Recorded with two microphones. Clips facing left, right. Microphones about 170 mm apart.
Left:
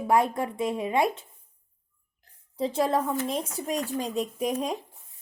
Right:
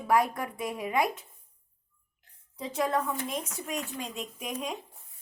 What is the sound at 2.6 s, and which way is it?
Speech, 30° left (ahead or behind).